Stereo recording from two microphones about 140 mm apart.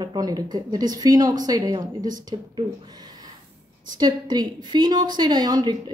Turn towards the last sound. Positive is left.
turn(degrees=-30)  # may be behind; listen again after turning